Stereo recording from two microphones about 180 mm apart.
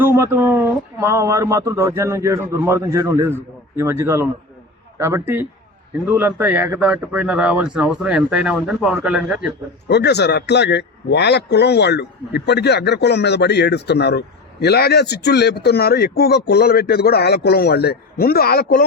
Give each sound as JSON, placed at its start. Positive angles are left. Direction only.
{"t": 0.0, "sound": "speech", "side_deg": -15}
{"t": 9.9, "sound": "a man's voice", "side_deg": 70}